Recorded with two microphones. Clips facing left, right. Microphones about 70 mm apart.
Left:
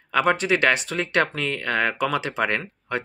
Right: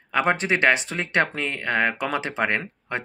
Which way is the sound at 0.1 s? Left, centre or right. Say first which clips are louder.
Left 1 dB; right.